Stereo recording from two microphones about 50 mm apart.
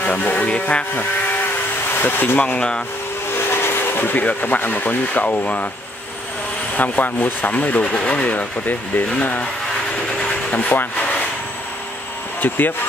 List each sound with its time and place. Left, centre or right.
0.0 s vehicle: left
2.0 s speech: left
2.3 s speech: left
3.3 s a sound: left
4.2 s speech: left
6.7 s speech: left
7.8 s speech: left
10.5 s speech: left
12.4 s speech: left